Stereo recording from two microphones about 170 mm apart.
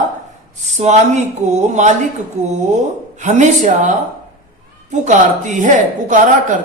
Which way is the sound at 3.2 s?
45° right (ahead or behind).